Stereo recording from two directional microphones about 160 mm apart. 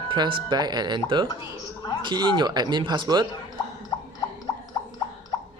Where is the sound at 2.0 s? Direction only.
30° right (ahead or behind).